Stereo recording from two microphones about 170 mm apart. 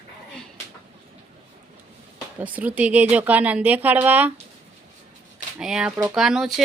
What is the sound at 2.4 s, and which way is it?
Speech, 10° right (ahead or behind).